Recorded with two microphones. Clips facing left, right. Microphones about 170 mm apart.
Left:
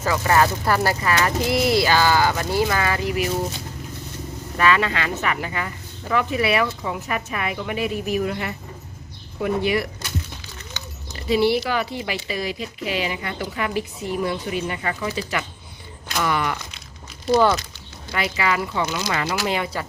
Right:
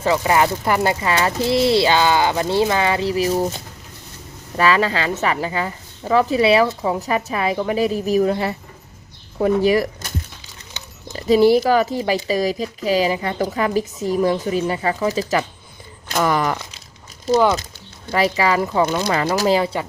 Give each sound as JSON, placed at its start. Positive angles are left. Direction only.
{"t": 0.0, "sound": "speech", "side_deg": -20}
{"t": 4.5, "sound": "a woman's voice", "side_deg": -35}
{"t": 11.3, "sound": "a woman's voice", "side_deg": -40}
{"t": 17.3, "sound": "speech", "side_deg": -15}
{"t": 18.1, "sound": "a woman's voice", "side_deg": -35}
{"t": 18.9, "sound": "speech", "side_deg": -50}
{"t": 19.5, "sound": "a woman's voice", "side_deg": -30}